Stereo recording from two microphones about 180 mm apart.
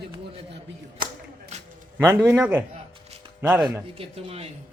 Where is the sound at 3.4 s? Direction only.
10° right (ahead or behind).